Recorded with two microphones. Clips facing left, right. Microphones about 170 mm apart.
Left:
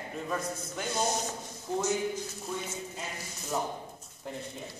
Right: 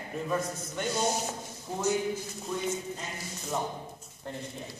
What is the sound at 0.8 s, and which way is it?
Speech, centre (ahead or behind).